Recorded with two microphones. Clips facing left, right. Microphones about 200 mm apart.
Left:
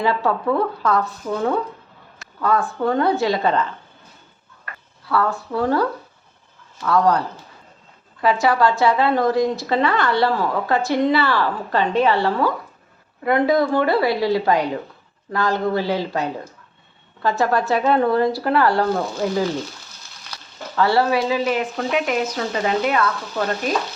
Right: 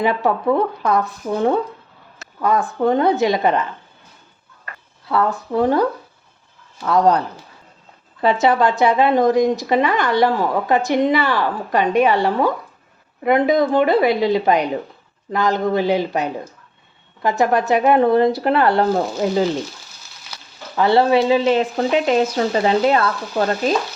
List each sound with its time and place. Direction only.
0.0 s speech: 20° right (ahead or behind)
5.0 s speech: 20° right (ahead or behind)